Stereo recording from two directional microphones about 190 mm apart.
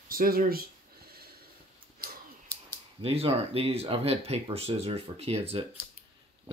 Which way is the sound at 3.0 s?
30° right (ahead or behind).